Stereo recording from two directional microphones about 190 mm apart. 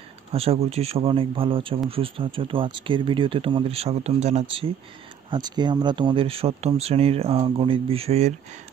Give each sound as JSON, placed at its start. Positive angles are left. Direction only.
{"t": 0.3, "sound": "speech", "side_deg": -30}